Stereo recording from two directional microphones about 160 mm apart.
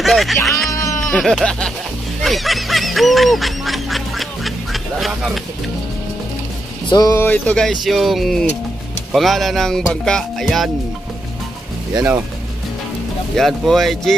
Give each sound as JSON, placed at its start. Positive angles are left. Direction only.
{"t": 0.0, "sound": "music", "side_deg": 0}
{"t": 1.0, "sound": "speech", "side_deg": 5}
{"t": 2.2, "sound": "honk", "side_deg": 0}
{"t": 6.9, "sound": "speech", "side_deg": 25}
{"t": 7.2, "sound": "speech", "side_deg": 10}
{"t": 13.4, "sound": "speech", "side_deg": 0}